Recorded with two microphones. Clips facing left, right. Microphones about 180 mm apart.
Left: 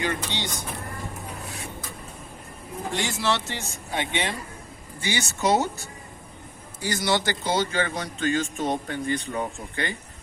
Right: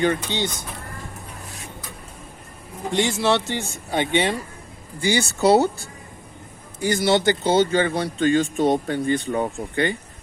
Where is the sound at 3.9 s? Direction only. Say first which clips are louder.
Right 7 dB; 35° right (ahead or behind).